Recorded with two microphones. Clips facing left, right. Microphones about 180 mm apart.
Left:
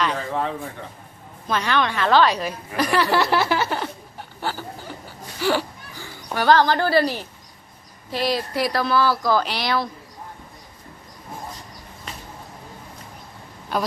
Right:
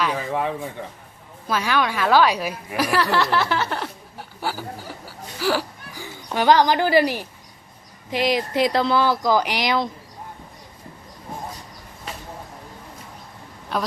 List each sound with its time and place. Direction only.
0.0 s a sound: 10° right (ahead or behind)
1.5 s speech: 5° right (ahead or behind)
3.1 s speech: 10° left (ahead or behind)
6.3 s speech: 15° right (ahead or behind)
13.7 s a woman's voice: centre (ahead or behind)